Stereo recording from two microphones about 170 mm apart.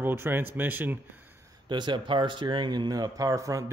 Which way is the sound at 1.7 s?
25° right (ahead or behind).